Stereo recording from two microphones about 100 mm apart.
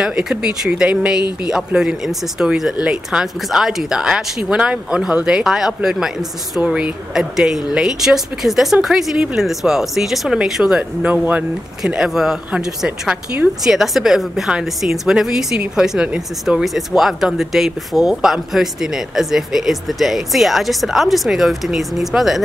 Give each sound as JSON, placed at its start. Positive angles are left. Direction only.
{"t": 0.0, "sound": "a woman's voice", "side_deg": -5}